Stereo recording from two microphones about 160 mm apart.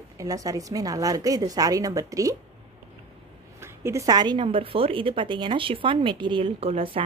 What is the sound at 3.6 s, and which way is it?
A woman's voice, 15° right (ahead or behind).